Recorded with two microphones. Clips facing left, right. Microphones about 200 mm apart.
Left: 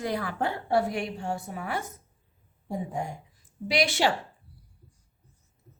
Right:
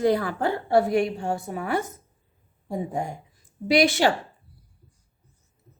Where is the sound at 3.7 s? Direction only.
45° right (ahead or behind).